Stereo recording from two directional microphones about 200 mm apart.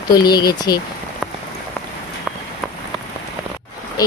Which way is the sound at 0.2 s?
20° left (ahead or behind).